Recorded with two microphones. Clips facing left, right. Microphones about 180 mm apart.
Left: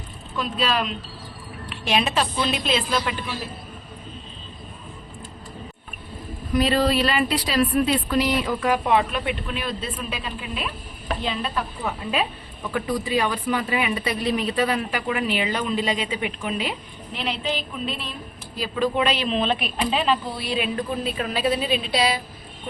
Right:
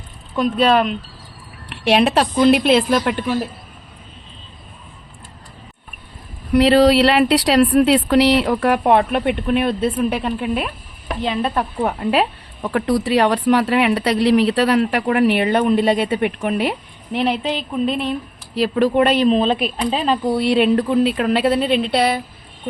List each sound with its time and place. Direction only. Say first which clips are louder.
0.3 s a woman's voice: right 9 dB; 60° right (ahead or behind)
6.5 s a woman's voice: right 8 dB; 75° right (ahead or behind); by 20.3 s 40° right (ahead or behind)
20.3 s speech: right 11 dB; 65° right (ahead or behind)